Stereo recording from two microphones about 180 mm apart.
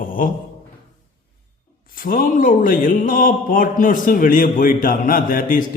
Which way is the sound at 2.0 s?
50° left (ahead or behind).